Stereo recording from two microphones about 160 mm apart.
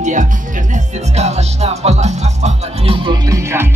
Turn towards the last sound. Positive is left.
turn(degrees=-20)  # may be behind; listen again after turning